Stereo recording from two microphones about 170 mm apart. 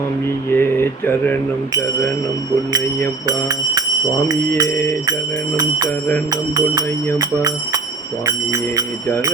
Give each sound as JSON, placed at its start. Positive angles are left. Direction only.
{"t": 0.5, "sound": "speech", "side_deg": 15}
{"t": 4.3, "sound": "speech", "side_deg": -20}
{"t": 7.2, "sound": "speech", "side_deg": -20}